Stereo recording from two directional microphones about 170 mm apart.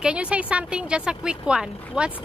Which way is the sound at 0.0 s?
5° right (ahead or behind).